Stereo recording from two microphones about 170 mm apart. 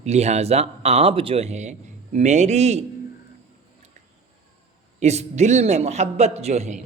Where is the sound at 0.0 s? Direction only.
40° right (ahead or behind).